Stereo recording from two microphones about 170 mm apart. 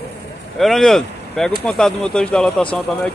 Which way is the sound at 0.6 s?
Centre (ahead or behind).